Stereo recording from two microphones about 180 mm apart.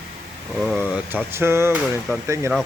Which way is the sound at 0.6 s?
Centre (ahead or behind).